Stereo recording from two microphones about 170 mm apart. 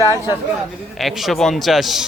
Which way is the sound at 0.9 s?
Centre (ahead or behind).